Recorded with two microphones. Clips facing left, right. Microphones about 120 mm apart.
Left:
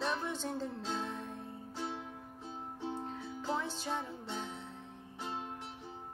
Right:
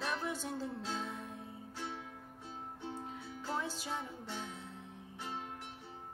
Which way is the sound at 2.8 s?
20° left (ahead or behind).